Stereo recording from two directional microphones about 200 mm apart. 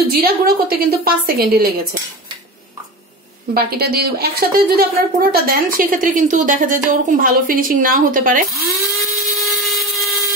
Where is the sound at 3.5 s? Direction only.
50° right (ahead or behind).